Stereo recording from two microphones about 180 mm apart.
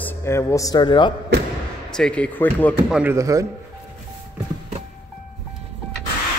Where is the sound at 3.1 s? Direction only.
20° right (ahead or behind).